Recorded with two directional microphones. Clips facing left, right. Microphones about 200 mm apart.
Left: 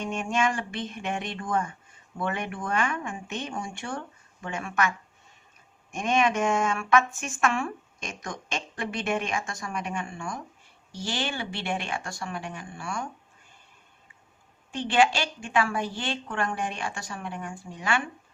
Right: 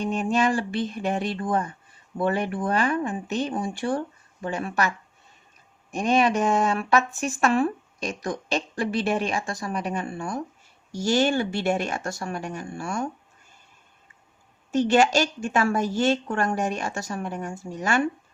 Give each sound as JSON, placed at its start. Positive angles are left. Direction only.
{"t": 0.0, "sound": "a woman's voice", "side_deg": -35}
{"t": 14.7, "sound": "a woman's voice", "side_deg": -40}